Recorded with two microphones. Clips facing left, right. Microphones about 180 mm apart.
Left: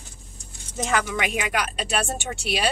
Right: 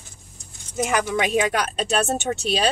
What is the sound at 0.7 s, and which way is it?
Speech, 15° right (ahead or behind).